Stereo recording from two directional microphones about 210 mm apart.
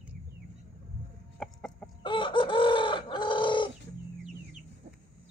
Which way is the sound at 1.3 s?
5° left (ahead or behind).